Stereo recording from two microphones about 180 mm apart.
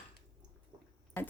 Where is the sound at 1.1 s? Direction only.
10° left (ahead or behind).